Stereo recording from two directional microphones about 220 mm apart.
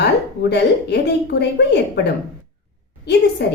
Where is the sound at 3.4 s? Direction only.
50° left (ahead or behind).